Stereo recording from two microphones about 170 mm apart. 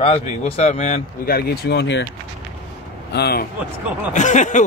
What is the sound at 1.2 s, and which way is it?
Speech, 65° left (ahead or behind).